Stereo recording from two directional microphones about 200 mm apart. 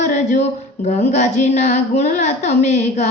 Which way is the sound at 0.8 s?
35° left (ahead or behind).